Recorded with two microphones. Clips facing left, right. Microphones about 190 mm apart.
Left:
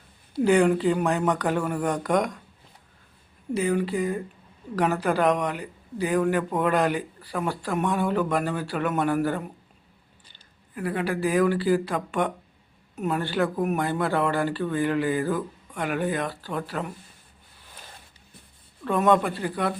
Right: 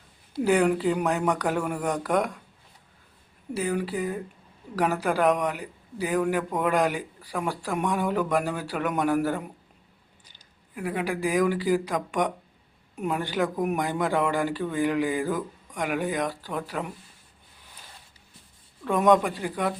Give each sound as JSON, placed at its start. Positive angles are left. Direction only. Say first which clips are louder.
{"t": 0.4, "sound": "speech", "louder": "left 2 dB", "side_deg": -5}
{"t": 3.5, "sound": "speech", "louder": "left 3 dB", "side_deg": -10}
{"t": 18.9, "sound": "speech", "louder": "right 1 dB", "side_deg": -15}